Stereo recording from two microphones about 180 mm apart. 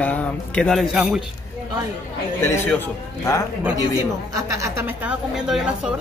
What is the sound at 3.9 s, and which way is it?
A woman's voice, 20° right (ahead or behind).